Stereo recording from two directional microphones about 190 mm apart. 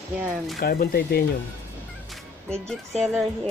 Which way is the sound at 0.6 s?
50° left (ahead or behind).